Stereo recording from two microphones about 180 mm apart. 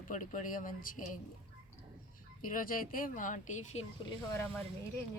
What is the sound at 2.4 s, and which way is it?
Speech, 50° left (ahead or behind).